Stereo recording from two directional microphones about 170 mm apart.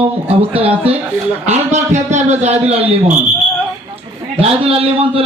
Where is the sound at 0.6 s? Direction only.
35° right (ahead or behind).